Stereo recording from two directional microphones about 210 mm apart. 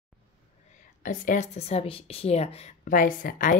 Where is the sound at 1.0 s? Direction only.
40° left (ahead or behind).